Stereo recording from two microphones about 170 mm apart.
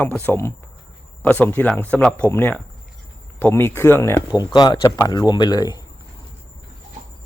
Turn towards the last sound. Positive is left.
turn(degrees=25)  # may be behind; listen again after turning